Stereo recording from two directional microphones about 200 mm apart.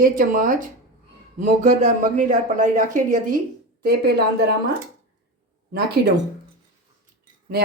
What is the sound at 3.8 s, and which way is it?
Speech, 50° right (ahead or behind).